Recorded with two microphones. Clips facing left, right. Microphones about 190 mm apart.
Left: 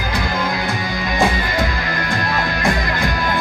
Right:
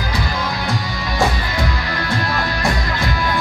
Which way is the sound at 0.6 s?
50° left (ahead or behind).